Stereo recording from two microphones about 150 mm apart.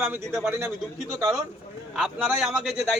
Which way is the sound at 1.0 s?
Centre (ahead or behind).